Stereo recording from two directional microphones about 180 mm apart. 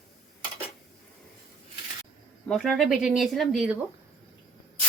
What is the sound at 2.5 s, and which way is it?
Speech, 5° left (ahead or behind).